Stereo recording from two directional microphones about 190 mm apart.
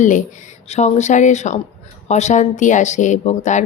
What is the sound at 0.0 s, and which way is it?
A woman's voice, 40° left (ahead or behind).